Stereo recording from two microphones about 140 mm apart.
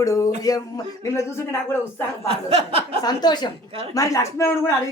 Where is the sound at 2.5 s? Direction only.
45° right (ahead or behind).